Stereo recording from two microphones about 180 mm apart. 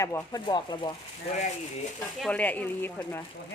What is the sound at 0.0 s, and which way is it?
Speech, 15° left (ahead or behind).